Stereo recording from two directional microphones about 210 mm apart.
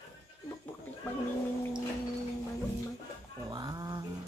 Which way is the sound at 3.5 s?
20° right (ahead or behind).